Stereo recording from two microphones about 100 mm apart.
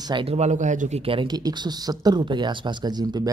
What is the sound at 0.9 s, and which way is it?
Speech, 70° right (ahead or behind).